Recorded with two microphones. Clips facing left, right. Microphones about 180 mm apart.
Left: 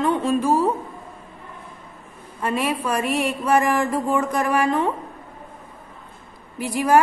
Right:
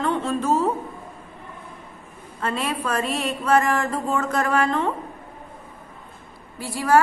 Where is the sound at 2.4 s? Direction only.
15° left (ahead or behind).